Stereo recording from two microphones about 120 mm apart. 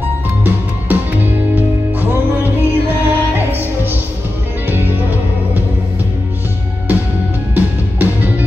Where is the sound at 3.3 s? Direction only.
15° right (ahead or behind).